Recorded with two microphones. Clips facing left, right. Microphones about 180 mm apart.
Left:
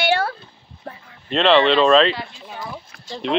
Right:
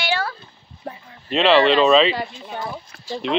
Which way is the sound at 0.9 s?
15° right (ahead or behind).